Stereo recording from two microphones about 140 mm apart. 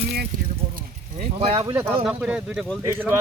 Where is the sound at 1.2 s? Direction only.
45° right (ahead or behind).